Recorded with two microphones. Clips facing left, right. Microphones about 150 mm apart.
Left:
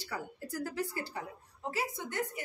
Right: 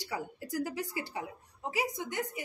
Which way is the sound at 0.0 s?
15° right (ahead or behind).